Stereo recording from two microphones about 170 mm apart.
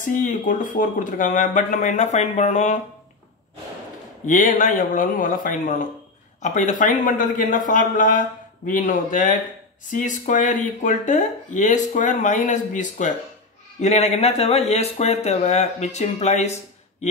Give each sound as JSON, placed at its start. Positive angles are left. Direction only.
{"t": 0.0, "sound": "speech", "side_deg": 50}
{"t": 4.3, "sound": "speech", "side_deg": 50}